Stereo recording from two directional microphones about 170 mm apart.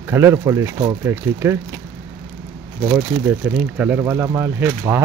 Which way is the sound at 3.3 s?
10° right (ahead or behind).